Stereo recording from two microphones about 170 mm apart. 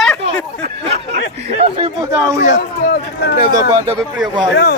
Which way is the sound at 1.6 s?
35° right (ahead or behind).